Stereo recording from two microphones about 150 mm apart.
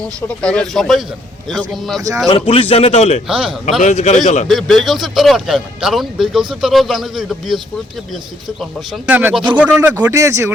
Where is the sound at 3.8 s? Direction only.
45° left (ahead or behind).